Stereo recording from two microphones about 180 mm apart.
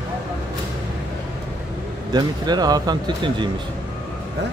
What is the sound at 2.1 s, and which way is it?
Speech, 25° right (ahead or behind).